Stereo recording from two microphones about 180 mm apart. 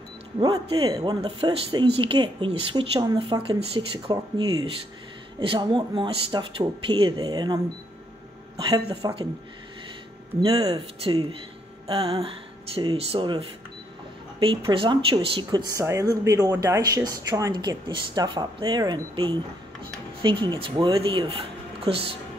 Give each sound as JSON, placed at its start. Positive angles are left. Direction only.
{"t": 0.4, "sound": "speech", "side_deg": -20}
{"t": 10.4, "sound": "speech", "side_deg": -30}